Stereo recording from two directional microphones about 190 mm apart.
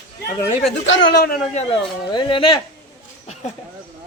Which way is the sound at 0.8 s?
65° left (ahead or behind).